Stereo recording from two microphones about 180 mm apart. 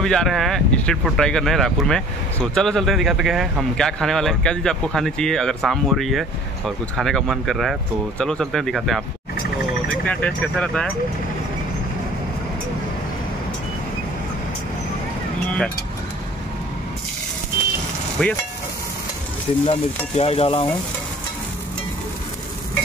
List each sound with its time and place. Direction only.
0.0 s speech: 5° left (ahead or behind)
18.2 s speech: 5° left (ahead or behind)
19.6 s stir: 35° left (ahead or behind)